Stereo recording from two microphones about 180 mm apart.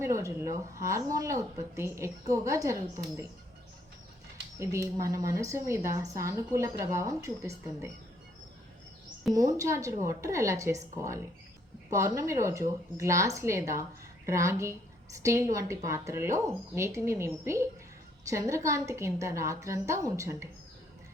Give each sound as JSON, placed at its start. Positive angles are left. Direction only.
{"t": 0.0, "sound": "a woman's voice", "side_deg": -15}
{"t": 4.6, "sound": "a woman's voice", "side_deg": -15}
{"t": 9.3, "sound": "a woman's voice", "side_deg": -20}
{"t": 11.9, "sound": "a woman's voice", "side_deg": -15}